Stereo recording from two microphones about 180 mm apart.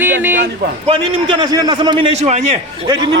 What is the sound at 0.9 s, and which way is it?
A man's voice, 30° right (ahead or behind).